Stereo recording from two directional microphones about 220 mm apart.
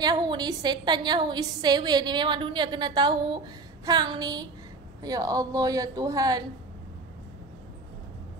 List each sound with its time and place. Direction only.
0.0 s a woman's voice: 20° right (ahead or behind)